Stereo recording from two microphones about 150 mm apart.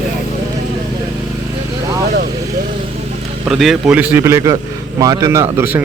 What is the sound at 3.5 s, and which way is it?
Speech, centre (ahead or behind).